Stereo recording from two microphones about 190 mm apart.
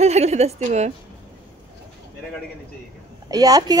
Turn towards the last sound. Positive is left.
turn(degrees=-20)  # may be behind; listen again after turning